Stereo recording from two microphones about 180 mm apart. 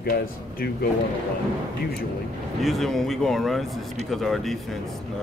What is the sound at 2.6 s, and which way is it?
Speech, centre (ahead or behind).